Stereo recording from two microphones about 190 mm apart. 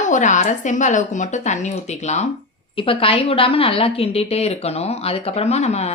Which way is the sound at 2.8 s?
30° left (ahead or behind).